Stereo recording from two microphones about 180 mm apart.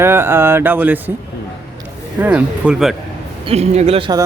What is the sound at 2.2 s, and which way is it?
Speech, 5° right (ahead or behind).